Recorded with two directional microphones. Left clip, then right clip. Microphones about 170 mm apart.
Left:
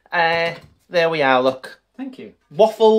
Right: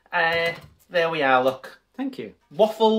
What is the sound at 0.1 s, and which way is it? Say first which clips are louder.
Speech: left 4 dB; 75° left (ahead or behind).